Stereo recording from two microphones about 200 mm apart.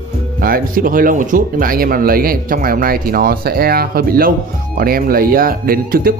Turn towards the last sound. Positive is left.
turn(degrees=-45)  # may be behind; listen again after turning